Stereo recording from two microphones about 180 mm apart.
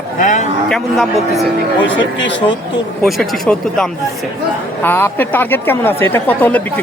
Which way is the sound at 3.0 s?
Centre (ahead or behind).